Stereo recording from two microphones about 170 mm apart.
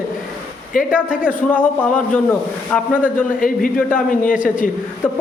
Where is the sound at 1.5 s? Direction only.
10° left (ahead or behind).